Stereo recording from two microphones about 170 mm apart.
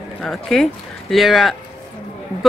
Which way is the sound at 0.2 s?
5° left (ahead or behind).